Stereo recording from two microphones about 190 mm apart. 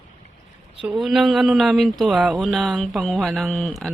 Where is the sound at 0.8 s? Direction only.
Centre (ahead or behind).